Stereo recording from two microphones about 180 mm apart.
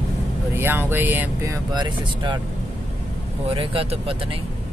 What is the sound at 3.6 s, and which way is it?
Speech, 30° right (ahead or behind).